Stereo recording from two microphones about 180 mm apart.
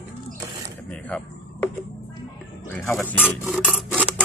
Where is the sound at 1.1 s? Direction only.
5° left (ahead or behind).